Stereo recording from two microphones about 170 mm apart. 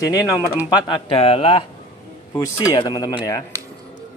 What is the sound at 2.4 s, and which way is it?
Speech, 25° left (ahead or behind).